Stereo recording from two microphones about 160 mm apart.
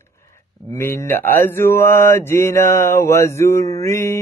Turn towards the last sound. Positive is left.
turn(degrees=15)  # may be behind; listen again after turning